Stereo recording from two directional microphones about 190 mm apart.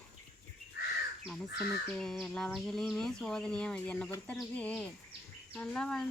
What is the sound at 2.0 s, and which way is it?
Speech, 5° left (ahead or behind).